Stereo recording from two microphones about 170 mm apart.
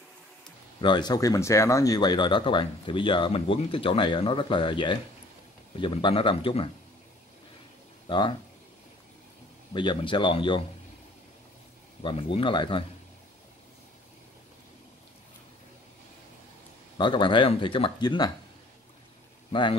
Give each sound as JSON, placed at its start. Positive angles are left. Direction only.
{"t": 0.7, "sound": "speech", "side_deg": 25}
{"t": 8.1, "sound": "speech", "side_deg": 30}
{"t": 9.8, "sound": "speech", "side_deg": 30}
{"t": 12.0, "sound": "speech", "side_deg": 30}
{"t": 17.0, "sound": "speech", "side_deg": 30}